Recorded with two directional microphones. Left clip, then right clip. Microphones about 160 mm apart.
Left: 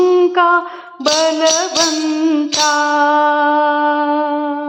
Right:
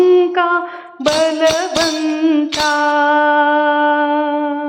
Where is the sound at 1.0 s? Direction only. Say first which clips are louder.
Even; 25° right (ahead or behind).